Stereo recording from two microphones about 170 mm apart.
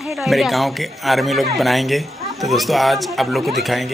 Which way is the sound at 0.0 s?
5° right (ahead or behind).